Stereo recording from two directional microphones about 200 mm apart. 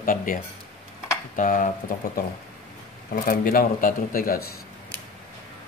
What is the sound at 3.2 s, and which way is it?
Speech, 45° left (ahead or behind).